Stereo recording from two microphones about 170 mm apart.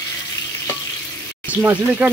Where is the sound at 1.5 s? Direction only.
10° right (ahead or behind).